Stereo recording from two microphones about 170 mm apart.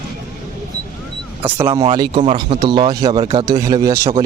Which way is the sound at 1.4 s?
30° right (ahead or behind).